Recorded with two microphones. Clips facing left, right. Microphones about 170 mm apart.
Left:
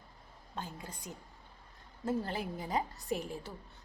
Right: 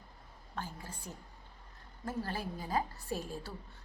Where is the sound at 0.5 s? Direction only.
20° left (ahead or behind).